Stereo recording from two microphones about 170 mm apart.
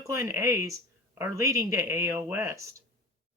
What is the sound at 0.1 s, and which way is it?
Speech, 15° right (ahead or behind).